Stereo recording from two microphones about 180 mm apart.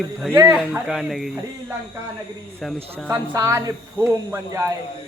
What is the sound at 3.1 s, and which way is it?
A man's voice, 15° right (ahead or behind).